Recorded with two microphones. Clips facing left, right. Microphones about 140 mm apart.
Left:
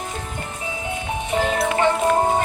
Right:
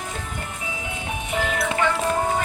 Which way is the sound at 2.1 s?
30° left (ahead or behind).